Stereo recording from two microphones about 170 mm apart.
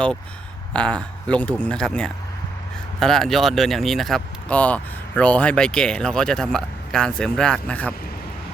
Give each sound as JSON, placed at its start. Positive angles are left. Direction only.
{"t": 0.7, "sound": "speech", "side_deg": 5}